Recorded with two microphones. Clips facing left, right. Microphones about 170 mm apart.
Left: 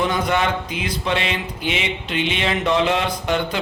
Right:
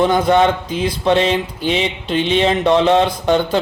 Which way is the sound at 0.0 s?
35° right (ahead or behind).